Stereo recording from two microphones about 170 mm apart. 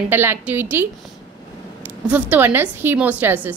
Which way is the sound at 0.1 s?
15° right (ahead or behind).